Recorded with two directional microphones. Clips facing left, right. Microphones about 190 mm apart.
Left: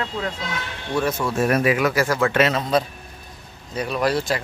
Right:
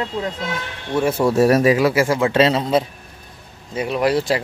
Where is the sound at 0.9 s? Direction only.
30° right (ahead or behind).